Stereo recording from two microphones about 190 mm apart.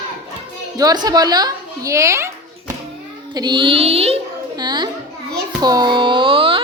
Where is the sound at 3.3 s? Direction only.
25° right (ahead or behind).